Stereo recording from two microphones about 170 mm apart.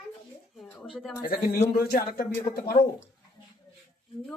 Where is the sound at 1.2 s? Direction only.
65° left (ahead or behind).